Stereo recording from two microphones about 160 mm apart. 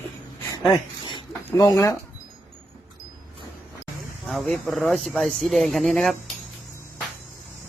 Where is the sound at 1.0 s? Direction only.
30° left (ahead or behind).